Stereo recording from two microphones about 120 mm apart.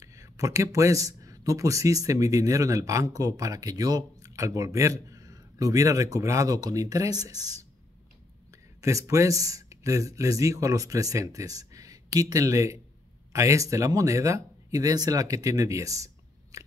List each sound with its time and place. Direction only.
0.0 s speech: 25° right (ahead or behind)
16.5 s crunch: 30° right (ahead or behind)